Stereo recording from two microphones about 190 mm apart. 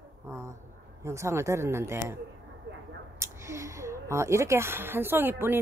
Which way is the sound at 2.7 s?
65° right (ahead or behind).